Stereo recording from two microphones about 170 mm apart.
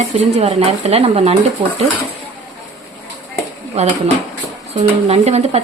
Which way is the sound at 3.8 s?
40° right (ahead or behind).